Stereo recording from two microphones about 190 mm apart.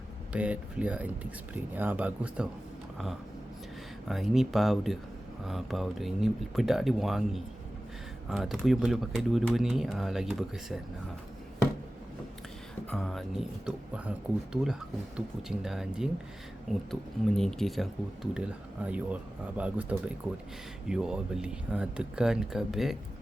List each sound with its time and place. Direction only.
0.3 s speech: 5° right (ahead or behind)
4.1 s speech: centre (ahead or behind)
12.9 s speech: centre (ahead or behind)